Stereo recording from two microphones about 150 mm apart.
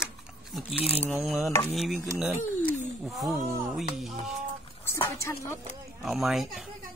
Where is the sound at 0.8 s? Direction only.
40° left (ahead or behind).